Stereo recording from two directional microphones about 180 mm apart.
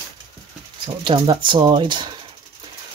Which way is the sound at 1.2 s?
25° right (ahead or behind).